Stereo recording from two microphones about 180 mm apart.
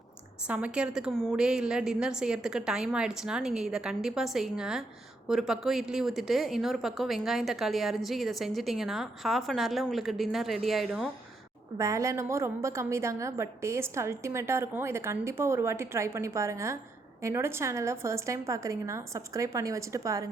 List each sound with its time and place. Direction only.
0.4 s speech: 5° right (ahead or behind)
11.8 s a woman's voice: 15° right (ahead or behind)